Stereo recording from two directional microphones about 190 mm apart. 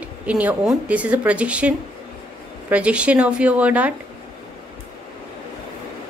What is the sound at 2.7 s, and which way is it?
A woman's voice, 5° right (ahead or behind).